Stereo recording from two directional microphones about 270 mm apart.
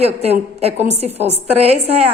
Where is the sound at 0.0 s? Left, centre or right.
Right.